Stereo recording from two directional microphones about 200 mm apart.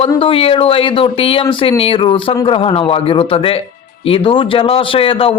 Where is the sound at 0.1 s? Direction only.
25° left (ahead or behind).